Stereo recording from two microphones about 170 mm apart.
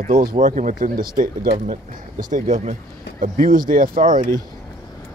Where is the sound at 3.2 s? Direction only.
55° right (ahead or behind).